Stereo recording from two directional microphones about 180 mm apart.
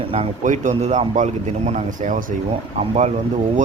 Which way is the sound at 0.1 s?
40° right (ahead or behind).